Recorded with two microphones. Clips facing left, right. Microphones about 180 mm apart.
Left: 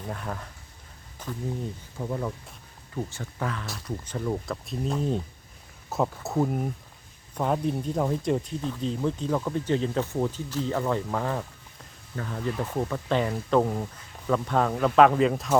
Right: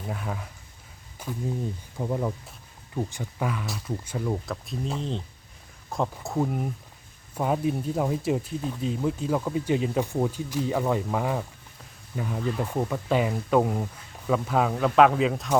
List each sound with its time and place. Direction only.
0.1 s speech: 5° right (ahead or behind)